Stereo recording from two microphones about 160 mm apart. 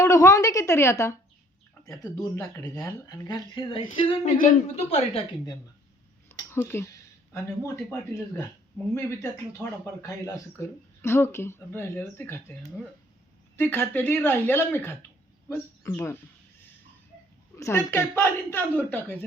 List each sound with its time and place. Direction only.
0.0 s speech: 20° left (ahead or behind)
4.1 s a woman's voice: 45° left (ahead or behind)
6.2 s a sound: 15° left (ahead or behind)
7.3 s speech: 15° left (ahead or behind)
9.0 s speech: 15° left (ahead or behind)
13.6 s speech: 15° left (ahead or behind)
17.6 s speech: 15° left (ahead or behind)